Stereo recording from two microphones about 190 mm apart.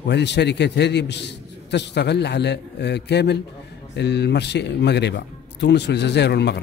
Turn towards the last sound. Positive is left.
turn(degrees=65)  # may be behind; listen again after turning